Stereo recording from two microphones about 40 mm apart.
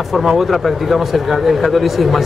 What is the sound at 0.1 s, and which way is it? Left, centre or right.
Speech, centre.